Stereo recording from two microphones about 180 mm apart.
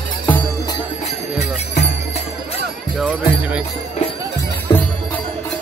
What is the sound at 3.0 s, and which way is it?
Jingle bell, 5° right (ahead or behind).